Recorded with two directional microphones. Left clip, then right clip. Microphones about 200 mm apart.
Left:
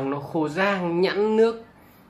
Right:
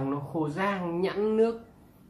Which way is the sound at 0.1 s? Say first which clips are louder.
Left 5 dB; 30° left (ahead or behind).